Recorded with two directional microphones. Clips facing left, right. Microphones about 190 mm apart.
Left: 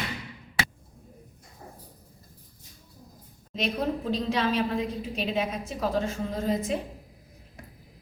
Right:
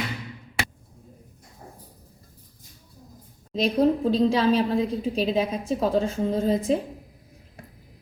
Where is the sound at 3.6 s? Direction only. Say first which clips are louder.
Right 8 dB; 35° right (ahead or behind).